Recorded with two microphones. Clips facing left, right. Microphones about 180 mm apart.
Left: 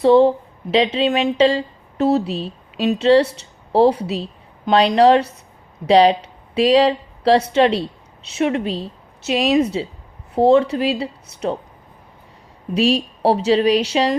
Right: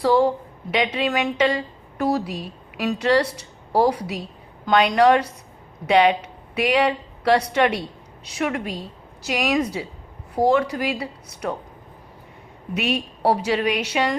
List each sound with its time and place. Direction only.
0.0 s a woman's voice: 25° left (ahead or behind)
12.7 s a woman's voice: 30° left (ahead or behind)